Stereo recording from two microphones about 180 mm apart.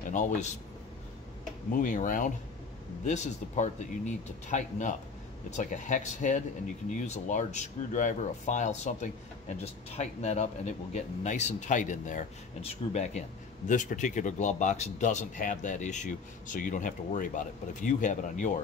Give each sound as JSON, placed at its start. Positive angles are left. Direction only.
{"t": 0.0, "sound": "speech", "side_deg": 45}
{"t": 1.7, "sound": "speech", "side_deg": 45}